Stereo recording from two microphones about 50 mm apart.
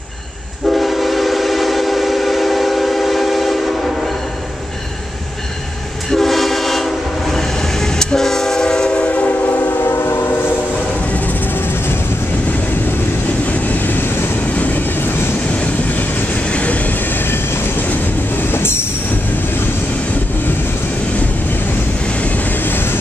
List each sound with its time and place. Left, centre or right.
0.7 s train: centre
6.0 s train: centre
9.7 s train: left
13.5 s train: left
17.2 s train: left
22.7 s vehicle: left